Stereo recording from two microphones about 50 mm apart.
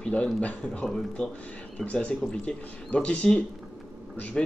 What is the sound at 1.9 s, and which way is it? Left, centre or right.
Speech, left.